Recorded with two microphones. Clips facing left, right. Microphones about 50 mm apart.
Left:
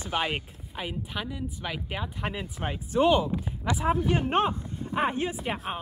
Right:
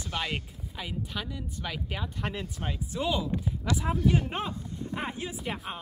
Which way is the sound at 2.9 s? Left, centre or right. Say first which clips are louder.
Left 8 dB; left.